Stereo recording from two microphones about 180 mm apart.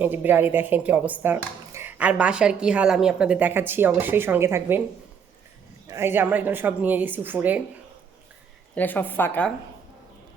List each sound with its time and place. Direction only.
0.0 s speech: 10° right (ahead or behind)
5.9 s speech: 15° right (ahead or behind)
8.7 s a woman's voice: 10° left (ahead or behind)